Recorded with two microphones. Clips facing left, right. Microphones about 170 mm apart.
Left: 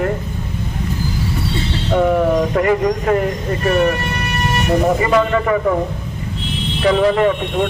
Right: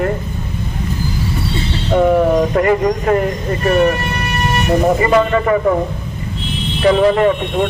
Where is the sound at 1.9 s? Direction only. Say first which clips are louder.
Right 3 dB; 30° right (ahead or behind).